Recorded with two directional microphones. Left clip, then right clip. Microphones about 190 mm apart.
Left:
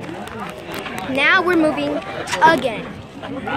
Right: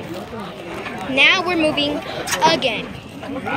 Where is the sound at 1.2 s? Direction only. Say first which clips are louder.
Even; 20° left (ahead or behind).